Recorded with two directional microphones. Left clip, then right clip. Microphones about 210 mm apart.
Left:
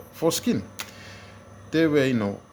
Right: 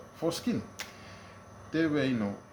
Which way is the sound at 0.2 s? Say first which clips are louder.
Left 8 dB; 55° left (ahead or behind).